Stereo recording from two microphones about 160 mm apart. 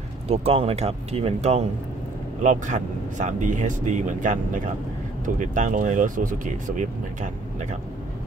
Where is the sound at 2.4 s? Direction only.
50° right (ahead or behind).